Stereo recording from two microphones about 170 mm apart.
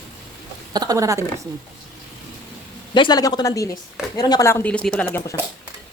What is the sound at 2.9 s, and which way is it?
A woman's voice, 25° left (ahead or behind).